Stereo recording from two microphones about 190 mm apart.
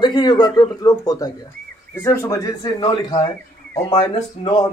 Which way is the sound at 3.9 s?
25° left (ahead or behind).